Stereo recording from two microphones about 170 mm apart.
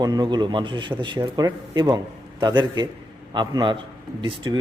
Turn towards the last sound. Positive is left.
turn(degrees=-30)  # may be behind; listen again after turning